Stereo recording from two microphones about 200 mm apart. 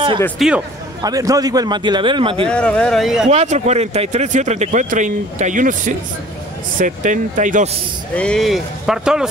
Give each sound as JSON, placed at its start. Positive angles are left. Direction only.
{"t": 0.4, "sound": "speech", "side_deg": 0}
{"t": 1.0, "sound": "a man's voice", "side_deg": -15}
{"t": 2.4, "sound": "speech", "side_deg": 5}
{"t": 3.3, "sound": "speech", "side_deg": -35}
{"t": 8.1, "sound": "speech", "side_deg": 5}